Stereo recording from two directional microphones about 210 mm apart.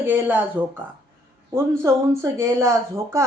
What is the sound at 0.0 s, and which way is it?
Speech, 10° right (ahead or behind).